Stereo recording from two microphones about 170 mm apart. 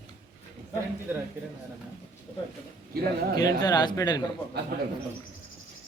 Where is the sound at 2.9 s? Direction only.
65° right (ahead or behind).